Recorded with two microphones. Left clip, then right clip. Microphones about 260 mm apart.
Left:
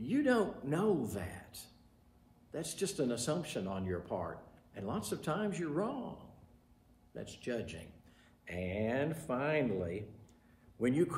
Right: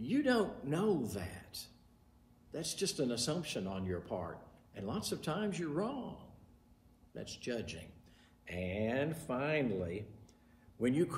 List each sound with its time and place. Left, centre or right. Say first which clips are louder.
0.0 s a man's voice: left 1 dB; centre
2.8 s speech: left 1 dB; centre
7.2 s speech: left 1 dB; centre